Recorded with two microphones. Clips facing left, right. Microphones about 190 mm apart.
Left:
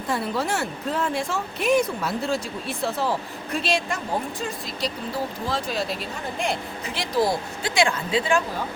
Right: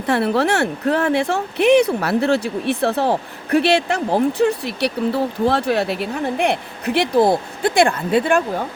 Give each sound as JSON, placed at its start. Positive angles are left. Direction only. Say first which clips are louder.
{"t": 0.0, "sound": "speech", "louder": "right 8 dB", "side_deg": -70}